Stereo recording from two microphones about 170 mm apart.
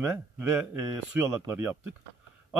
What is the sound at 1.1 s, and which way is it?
Speech, 10° right (ahead or behind).